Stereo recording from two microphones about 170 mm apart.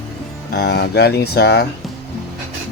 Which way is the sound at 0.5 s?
75° left (ahead or behind).